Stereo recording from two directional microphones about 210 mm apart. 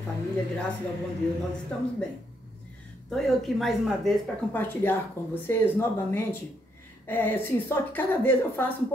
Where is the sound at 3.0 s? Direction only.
Centre (ahead or behind).